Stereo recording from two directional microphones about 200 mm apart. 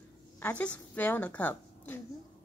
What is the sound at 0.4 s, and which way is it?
A woman's voice, 5° left (ahead or behind).